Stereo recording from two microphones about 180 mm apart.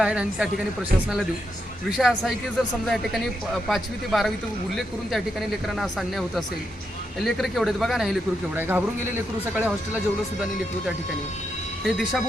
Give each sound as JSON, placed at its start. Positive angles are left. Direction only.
{"t": 0.0, "sound": "a man's voice", "side_deg": -5}
{"t": 1.9, "sound": "a man's voice", "side_deg": 0}
{"t": 5.6, "sound": "a man's voice", "side_deg": 0}
{"t": 11.9, "sound": "a man's voice", "side_deg": 0}